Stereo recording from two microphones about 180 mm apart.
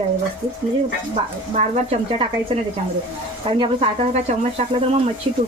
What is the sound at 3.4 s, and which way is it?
Speech, 30° right (ahead or behind).